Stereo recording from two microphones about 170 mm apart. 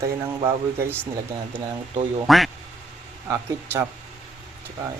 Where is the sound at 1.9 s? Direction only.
30° right (ahead or behind).